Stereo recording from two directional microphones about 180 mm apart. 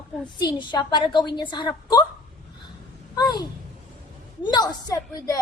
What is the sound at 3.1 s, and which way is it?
Female singing, 25° left (ahead or behind).